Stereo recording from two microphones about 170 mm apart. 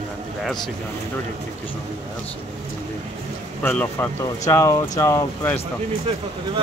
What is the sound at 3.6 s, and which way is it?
Speech, 15° left (ahead or behind).